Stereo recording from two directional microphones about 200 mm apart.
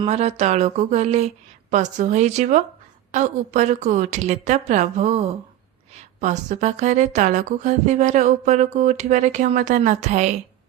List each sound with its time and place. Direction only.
0.0 s a woman's voice: 30° right (ahead or behind)